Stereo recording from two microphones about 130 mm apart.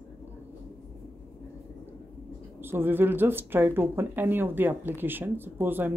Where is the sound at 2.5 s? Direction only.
15° right (ahead or behind).